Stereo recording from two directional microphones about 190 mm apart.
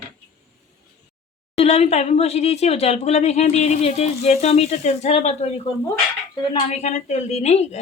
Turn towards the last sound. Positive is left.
turn(degrees=35)  # may be behind; listen again after turning